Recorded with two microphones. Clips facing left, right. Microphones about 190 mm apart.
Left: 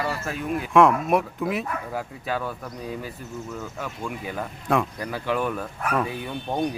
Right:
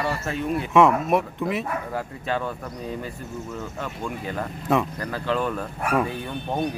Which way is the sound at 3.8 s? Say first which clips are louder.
Right 1 dB; 5° left (ahead or behind).